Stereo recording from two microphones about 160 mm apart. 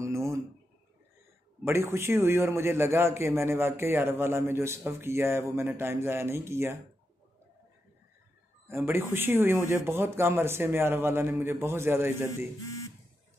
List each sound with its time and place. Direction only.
0.0 s a sound: 20° right (ahead or behind)
1.6 s a man's voice: 15° right (ahead or behind)
8.6 s a man's voice: 15° right (ahead or behind)